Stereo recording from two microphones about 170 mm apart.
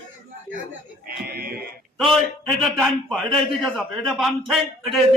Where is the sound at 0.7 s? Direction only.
65° right (ahead or behind).